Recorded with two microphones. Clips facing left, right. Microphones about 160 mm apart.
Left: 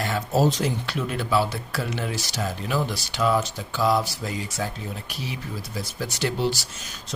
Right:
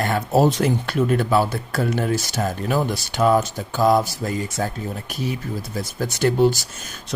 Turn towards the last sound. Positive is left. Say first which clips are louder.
# right 8 dB
turn(degrees=-50)  # may be behind; listen again after turning